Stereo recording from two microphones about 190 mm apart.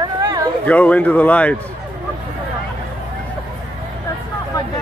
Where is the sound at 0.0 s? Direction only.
20° right (ahead or behind).